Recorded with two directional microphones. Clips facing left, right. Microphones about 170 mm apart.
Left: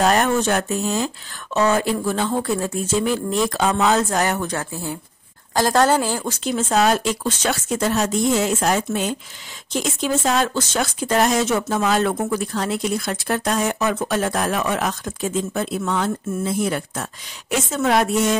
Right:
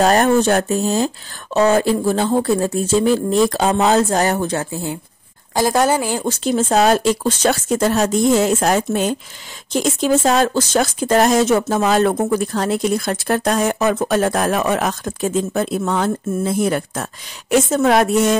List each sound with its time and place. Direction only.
0.0 s speech: 35° right (ahead or behind)
5.5 s a woman's voice: 10° right (ahead or behind)
6.2 s speech: 35° right (ahead or behind)